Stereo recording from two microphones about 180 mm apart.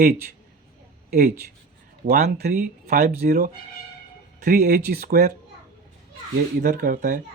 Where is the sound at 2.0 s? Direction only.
65° right (ahead or behind).